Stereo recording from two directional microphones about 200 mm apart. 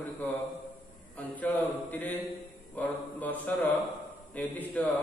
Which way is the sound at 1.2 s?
5° left (ahead or behind).